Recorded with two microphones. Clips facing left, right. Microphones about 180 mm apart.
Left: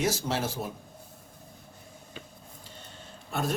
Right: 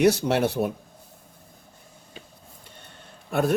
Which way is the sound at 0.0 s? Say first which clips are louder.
Right 9 dB; 65° right (ahead or behind).